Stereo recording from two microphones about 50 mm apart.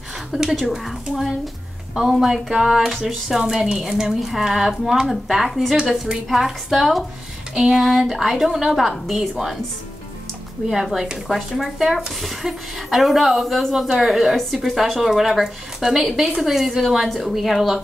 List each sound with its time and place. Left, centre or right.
0.4 s speech: centre
10.7 s speech: centre
14.3 s speech: centre